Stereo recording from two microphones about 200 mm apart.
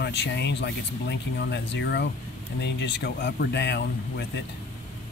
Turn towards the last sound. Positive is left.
turn(degrees=55)  # may be behind; listen again after turning